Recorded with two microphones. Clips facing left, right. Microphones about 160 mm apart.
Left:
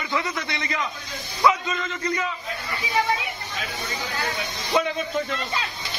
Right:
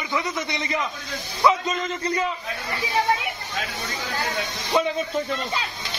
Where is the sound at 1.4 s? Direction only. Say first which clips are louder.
Right 1 dB; 30° right (ahead or behind).